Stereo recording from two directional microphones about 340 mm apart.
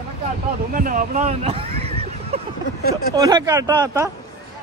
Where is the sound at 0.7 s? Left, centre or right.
Right.